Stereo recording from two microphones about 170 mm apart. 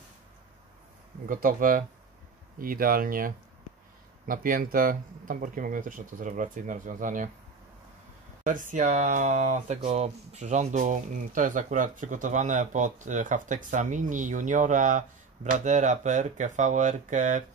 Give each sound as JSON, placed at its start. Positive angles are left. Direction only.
{"t": 1.2, "sound": "speech", "side_deg": -55}
{"t": 8.5, "sound": "speech", "side_deg": -50}